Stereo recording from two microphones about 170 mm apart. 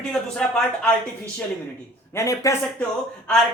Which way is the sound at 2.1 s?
20° left (ahead or behind).